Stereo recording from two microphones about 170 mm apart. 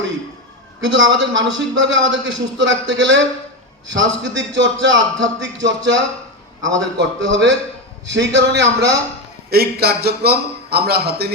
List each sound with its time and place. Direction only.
0.8 s a man's voice: 90° right
9.5 s a man's voice: 65° right (ahead or behind)